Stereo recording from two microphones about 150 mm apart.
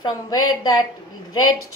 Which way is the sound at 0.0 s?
25° left (ahead or behind).